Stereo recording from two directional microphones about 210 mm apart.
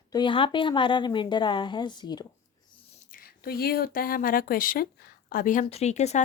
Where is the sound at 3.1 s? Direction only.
45° left (ahead or behind).